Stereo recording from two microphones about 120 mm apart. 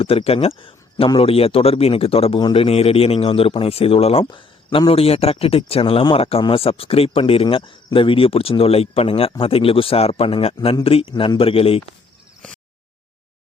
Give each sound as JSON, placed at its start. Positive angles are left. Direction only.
{"t": 0.0, "sound": "a man's voice", "side_deg": 50}
{"t": 4.3, "sound": "a man's voice", "side_deg": 40}